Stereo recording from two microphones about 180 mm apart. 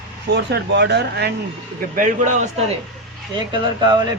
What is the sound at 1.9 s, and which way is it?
Speech, 45° right (ahead or behind).